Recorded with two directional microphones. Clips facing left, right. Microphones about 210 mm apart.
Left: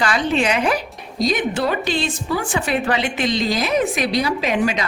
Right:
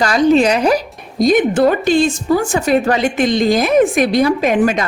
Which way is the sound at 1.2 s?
50° right (ahead or behind).